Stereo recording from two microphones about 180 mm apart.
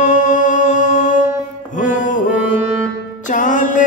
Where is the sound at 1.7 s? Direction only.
45° left (ahead or behind).